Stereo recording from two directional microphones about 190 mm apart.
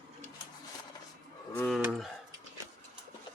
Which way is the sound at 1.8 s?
5° right (ahead or behind).